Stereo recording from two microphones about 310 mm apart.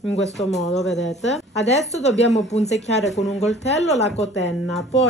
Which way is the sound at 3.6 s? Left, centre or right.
Left.